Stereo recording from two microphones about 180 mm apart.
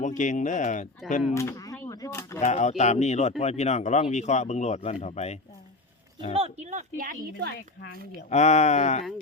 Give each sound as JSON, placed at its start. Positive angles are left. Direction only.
{"t": 0.0, "sound": "speech", "side_deg": 45}
{"t": 1.3, "sound": "speech", "side_deg": 15}
{"t": 2.4, "sound": "speech", "side_deg": 40}
{"t": 6.3, "sound": "a woman's voice", "side_deg": -35}
{"t": 8.3, "sound": "speech", "side_deg": 40}